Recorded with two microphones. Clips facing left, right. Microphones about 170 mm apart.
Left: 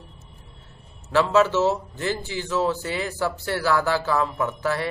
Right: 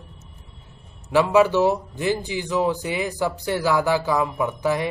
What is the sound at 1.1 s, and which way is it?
Speech, 15° right (ahead or behind).